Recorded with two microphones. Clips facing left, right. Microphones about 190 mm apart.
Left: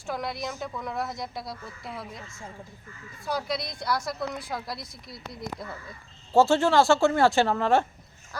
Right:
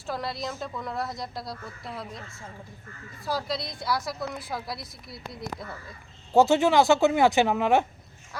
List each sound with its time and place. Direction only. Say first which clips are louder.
0.0 s a woman's voice: even; centre (ahead or behind)
3.2 s a woman's voice: even; centre (ahead or behind)
6.3 s speech: right 1 dB; 15° right (ahead or behind)